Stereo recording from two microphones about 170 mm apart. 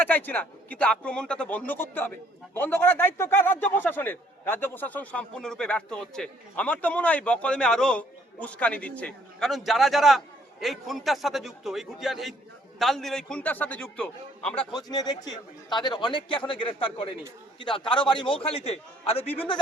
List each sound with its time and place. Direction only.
0.0 s a man's voice: 10° left (ahead or behind)
14.6 s a man's voice: 25° left (ahead or behind)